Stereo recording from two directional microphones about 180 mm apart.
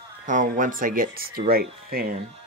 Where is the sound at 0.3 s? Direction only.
45° right (ahead or behind).